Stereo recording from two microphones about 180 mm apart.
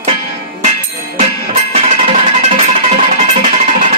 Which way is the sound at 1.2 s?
40° right (ahead or behind).